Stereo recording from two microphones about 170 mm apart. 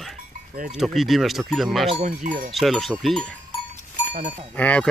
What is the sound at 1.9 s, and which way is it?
Cowbell, 45° right (ahead or behind).